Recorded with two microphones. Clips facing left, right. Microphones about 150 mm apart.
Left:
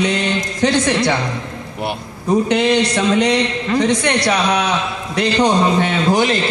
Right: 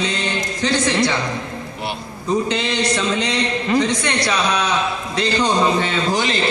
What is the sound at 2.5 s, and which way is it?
A man's voice, 60° left (ahead or behind).